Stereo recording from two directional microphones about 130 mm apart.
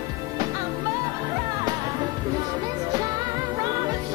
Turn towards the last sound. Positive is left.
turn(degrees=-30)  # may be behind; listen again after turning